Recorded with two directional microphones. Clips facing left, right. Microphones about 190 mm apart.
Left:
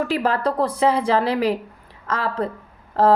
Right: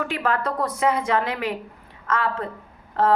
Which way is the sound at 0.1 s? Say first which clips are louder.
Left 4 dB; 35° left (ahead or behind).